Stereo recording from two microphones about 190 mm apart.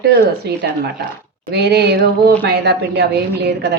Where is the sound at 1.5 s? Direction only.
60° right (ahead or behind).